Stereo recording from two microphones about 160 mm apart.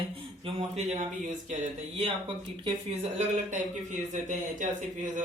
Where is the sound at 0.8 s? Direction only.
50° right (ahead or behind).